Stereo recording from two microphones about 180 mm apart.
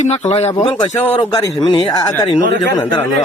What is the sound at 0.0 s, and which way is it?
Speech, 35° left (ahead or behind).